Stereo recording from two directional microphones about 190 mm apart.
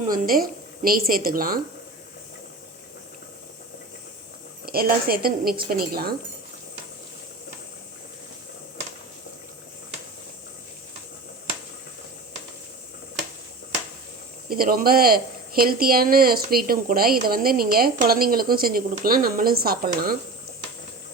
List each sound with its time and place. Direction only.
0.0 s a woman's voice: 45° right (ahead or behind)
4.6 s a woman's voice: 55° right (ahead or behind)
14.5 s a woman's voice: 50° right (ahead or behind)